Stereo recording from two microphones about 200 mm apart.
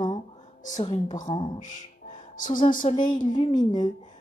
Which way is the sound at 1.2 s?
35° left (ahead or behind).